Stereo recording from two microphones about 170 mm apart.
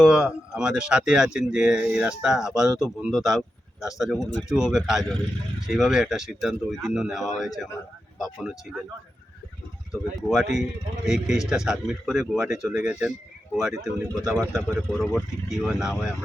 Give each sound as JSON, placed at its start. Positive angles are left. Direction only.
{"t": 0.0, "sound": "speech", "side_deg": -5}
{"t": 9.9, "sound": "speech", "side_deg": 0}